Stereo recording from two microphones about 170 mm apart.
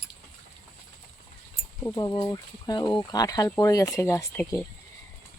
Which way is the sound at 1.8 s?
20° left (ahead or behind).